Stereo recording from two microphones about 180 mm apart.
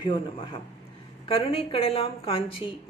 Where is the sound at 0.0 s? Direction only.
25° left (ahead or behind).